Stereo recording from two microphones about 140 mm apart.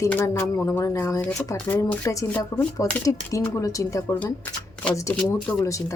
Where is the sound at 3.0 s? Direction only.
25° left (ahead or behind).